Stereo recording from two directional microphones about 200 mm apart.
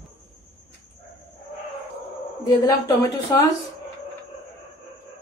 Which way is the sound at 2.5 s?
15° left (ahead or behind).